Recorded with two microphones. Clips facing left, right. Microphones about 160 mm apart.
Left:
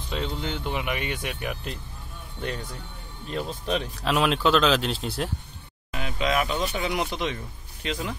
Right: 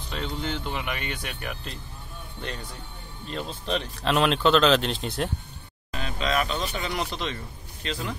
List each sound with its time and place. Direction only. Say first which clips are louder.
0.1 s speech: left 1 dB; 15° left (ahead or behind)
3.3 s speech: left 2 dB; 10° left (ahead or behind)
5.9 s speech: left 2 dB; 15° left (ahead or behind)